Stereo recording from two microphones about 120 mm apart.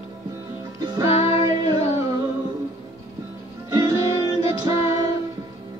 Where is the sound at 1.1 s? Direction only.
55° left (ahead or behind).